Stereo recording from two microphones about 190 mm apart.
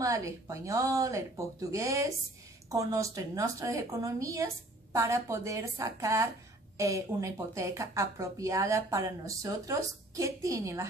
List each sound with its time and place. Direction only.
0.0 s speech: 15° right (ahead or behind)